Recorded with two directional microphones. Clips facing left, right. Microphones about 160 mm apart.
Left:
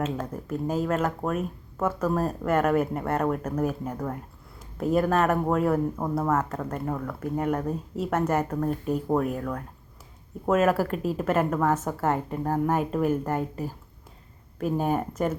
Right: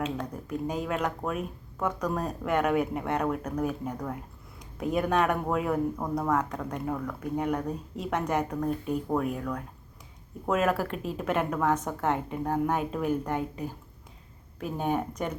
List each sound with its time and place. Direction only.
0.2 s a woman's voice: 5° left (ahead or behind)
14.8 s a woman's voice: 5° left (ahead or behind)